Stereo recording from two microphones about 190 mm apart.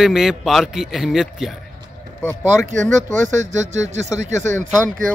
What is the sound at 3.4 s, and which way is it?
Speech, 40° right (ahead or behind).